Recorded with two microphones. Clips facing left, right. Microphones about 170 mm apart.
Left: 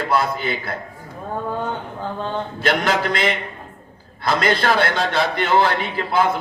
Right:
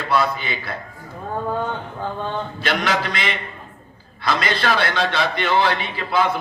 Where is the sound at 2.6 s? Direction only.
45° left (ahead or behind).